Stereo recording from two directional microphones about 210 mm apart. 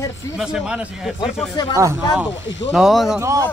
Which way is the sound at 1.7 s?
15° right (ahead or behind).